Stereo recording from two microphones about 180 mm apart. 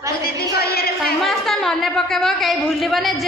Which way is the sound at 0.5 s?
60° left (ahead or behind).